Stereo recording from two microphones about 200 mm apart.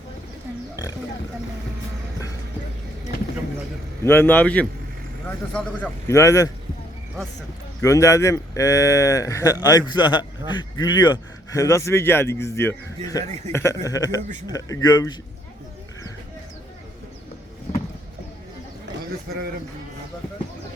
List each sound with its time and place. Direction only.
4.0 s speech: 10° left (ahead or behind)
7.8 s speech: 15° left (ahead or behind)